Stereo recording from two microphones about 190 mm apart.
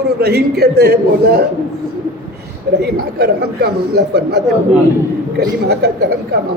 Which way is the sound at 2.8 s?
60° right (ahead or behind).